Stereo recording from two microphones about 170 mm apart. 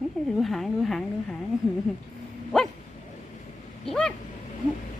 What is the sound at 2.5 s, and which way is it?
Dog, 5° left (ahead or behind).